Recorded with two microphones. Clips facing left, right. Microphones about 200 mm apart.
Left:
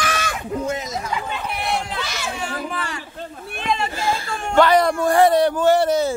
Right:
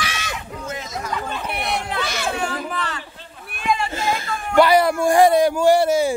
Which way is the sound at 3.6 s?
25° left (ahead or behind).